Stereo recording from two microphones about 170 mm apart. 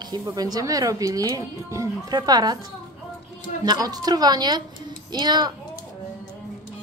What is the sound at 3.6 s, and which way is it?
A woman's voice, 20° right (ahead or behind).